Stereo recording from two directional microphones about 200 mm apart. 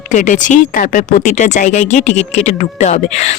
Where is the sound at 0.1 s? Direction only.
40° left (ahead or behind).